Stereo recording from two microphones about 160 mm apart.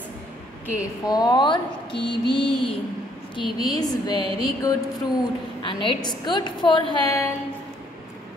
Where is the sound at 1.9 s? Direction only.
90° left.